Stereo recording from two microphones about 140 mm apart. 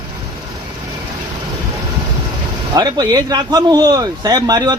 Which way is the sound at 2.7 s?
30° right (ahead or behind).